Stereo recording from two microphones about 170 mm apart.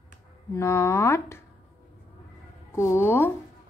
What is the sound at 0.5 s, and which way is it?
Speech, 15° left (ahead or behind).